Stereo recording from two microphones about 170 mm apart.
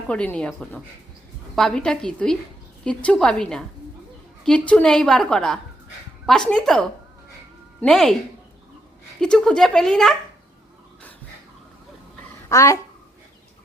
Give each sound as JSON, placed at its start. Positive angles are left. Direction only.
{"t": 0.1, "sound": "a woman's voice", "side_deg": 5}
{"t": 9.2, "sound": "a woman's voice", "side_deg": 5}
{"t": 12.5, "sound": "a child's voice", "side_deg": 20}